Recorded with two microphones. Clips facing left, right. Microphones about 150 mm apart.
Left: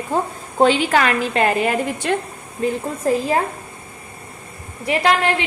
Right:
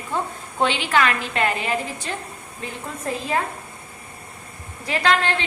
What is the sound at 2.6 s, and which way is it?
Speech, 30° left (ahead or behind).